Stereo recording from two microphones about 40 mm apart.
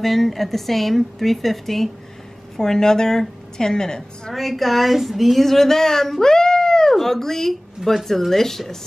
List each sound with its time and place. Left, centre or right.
0.0 s a woman's voice: centre
4.3 s a woman's voice: centre